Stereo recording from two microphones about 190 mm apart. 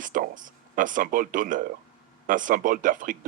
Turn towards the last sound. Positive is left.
turn(degrees=-45)  # may be behind; listen again after turning